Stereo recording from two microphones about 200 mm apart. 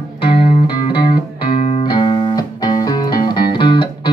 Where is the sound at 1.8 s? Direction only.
25° left (ahead or behind).